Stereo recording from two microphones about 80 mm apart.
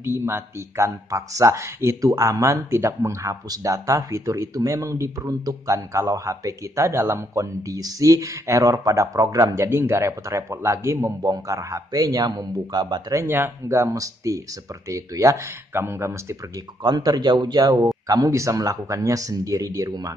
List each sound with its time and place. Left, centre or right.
0.0 s speech: right
3.4 s speech: right
7.6 s speech: right
9.7 s speech: right
13.3 s speech: right
16.8 s a man's voice: right